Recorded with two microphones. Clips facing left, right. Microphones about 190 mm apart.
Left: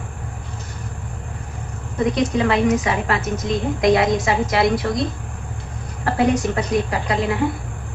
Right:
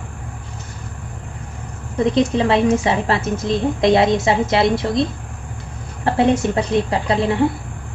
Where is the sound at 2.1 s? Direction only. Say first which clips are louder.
Right 3 dB; 25° right (ahead or behind).